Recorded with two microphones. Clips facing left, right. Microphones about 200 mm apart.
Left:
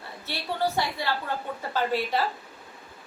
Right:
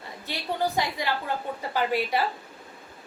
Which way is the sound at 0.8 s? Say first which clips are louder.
Right 1 dB; 15° right (ahead or behind).